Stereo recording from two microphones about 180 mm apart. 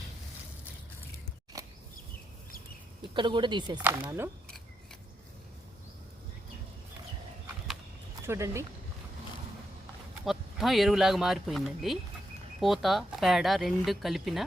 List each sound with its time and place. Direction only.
1.5 s a sound: 20° right (ahead or behind)
3.2 s speech: 25° right (ahead or behind)
3.8 s speech: 10° right (ahead or behind)
8.3 s speech: 15° right (ahead or behind)
10.2 s speech: centre (ahead or behind)